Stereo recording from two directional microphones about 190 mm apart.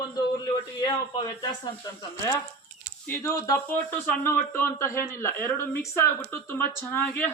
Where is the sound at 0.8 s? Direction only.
20° left (ahead or behind).